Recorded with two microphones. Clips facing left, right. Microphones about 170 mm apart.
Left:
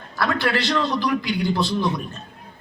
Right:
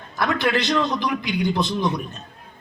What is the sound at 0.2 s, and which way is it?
A man's voice, 20° right (ahead or behind).